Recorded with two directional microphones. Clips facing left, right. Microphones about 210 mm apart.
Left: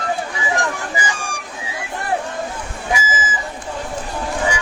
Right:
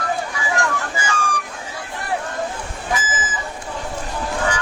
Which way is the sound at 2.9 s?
10° left (ahead or behind).